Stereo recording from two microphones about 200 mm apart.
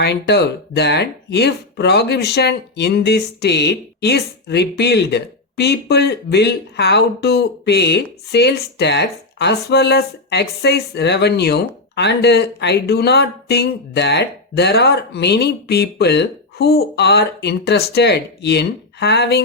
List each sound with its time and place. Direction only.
0.0 s speech: 55° left (ahead or behind)